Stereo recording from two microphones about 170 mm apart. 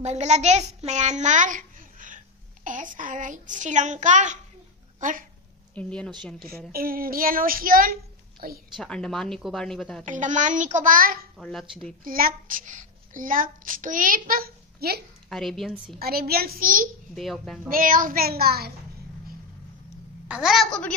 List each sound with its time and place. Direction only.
0.0 s a child's voice: 40° right (ahead or behind)
5.8 s speech: 5° left (ahead or behind)
6.7 s a woman's voice: 60° right (ahead or behind)
8.7 s speech: 5° left (ahead or behind)
10.0 s a child's voice: 50° right (ahead or behind)
11.3 s speech: centre (ahead or behind)
12.0 s a child's voice: 55° right (ahead or behind)
15.2 s speech: centre (ahead or behind)
16.0 s a woman's voice: 65° right (ahead or behind)
17.1 s speech: centre (ahead or behind)
17.6 s a woman's voice: 55° right (ahead or behind)
20.2 s speech: 5° right (ahead or behind)